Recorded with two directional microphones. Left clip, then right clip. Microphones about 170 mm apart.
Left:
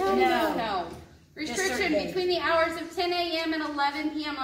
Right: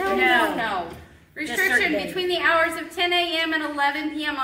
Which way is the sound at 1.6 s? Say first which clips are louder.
Right 6 dB; 10° right (ahead or behind).